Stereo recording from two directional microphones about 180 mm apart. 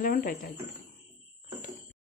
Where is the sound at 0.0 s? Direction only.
50° left (ahead or behind).